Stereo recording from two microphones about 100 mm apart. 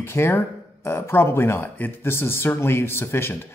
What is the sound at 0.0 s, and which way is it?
Speech, 25° left (ahead or behind).